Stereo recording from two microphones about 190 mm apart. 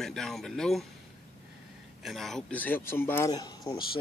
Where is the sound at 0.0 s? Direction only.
Centre (ahead or behind).